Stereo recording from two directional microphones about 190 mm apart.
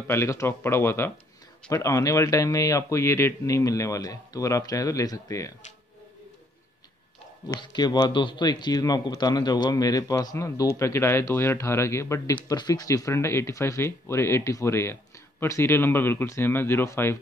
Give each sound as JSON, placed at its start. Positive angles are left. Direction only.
{"t": 0.0, "sound": "speech", "side_deg": 15}
{"t": 7.4, "sound": "a man's voice", "side_deg": 20}